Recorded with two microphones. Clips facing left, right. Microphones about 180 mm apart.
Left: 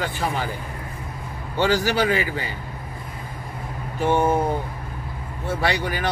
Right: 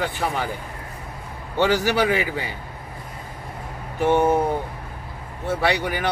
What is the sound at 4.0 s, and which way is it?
Speech, 15° right (ahead or behind).